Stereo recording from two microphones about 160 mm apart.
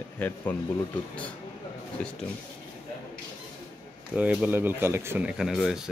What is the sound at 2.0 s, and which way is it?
Speech, 10° left (ahead or behind).